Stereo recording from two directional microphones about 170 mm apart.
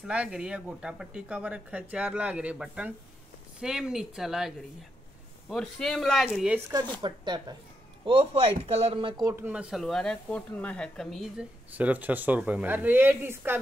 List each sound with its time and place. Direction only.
0.0 s speech: 5° right (ahead or behind)
7.0 s speech: 25° right (ahead or behind)
9.3 s speech: 10° right (ahead or behind)